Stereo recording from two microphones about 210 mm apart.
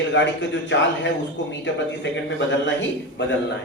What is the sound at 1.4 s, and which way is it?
Speech, 60° left (ahead or behind).